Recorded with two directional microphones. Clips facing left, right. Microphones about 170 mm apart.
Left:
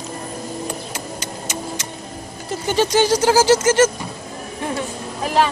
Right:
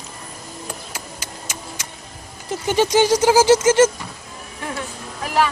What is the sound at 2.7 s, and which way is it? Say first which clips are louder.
Speech: right 1 dB; 15° right (ahead or behind).